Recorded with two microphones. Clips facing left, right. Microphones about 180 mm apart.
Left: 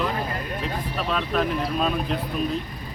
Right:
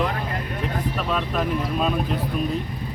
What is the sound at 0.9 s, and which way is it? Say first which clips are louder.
Speech: left 3 dB; 5° right (ahead or behind).